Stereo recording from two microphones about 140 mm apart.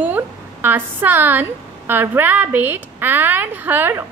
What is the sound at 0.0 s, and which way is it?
A woman's voice, 15° right (ahead or behind).